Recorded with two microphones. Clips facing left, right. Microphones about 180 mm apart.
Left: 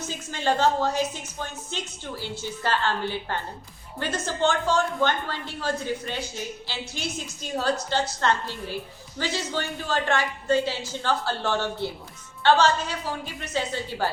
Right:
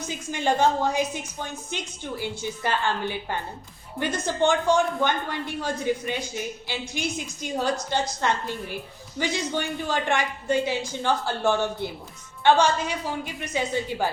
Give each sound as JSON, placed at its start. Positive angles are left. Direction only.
{"t": 0.1, "sound": "a woman's voice", "side_deg": -15}